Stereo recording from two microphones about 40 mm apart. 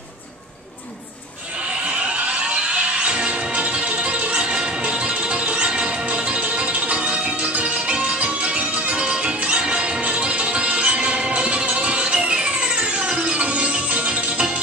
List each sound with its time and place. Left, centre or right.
1.9 s music: right